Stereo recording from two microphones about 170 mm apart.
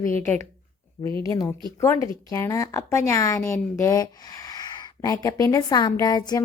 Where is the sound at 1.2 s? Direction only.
20° left (ahead or behind).